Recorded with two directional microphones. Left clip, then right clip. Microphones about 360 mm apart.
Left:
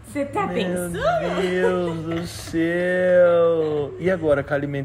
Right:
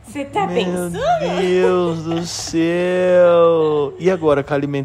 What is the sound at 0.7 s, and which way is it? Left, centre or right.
Speech, centre.